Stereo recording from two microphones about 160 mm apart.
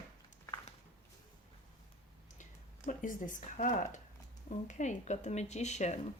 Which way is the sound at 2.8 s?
55° left (ahead or behind).